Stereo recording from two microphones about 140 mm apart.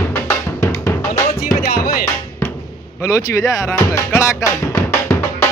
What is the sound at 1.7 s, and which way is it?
Music, 90° left.